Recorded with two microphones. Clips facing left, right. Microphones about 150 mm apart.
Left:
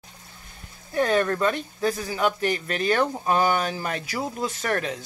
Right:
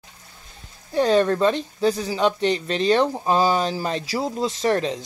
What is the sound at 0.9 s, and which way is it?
Speech, 30° right (ahead or behind).